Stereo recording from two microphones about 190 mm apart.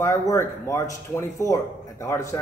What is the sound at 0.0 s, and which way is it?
Speech, 15° left (ahead or behind).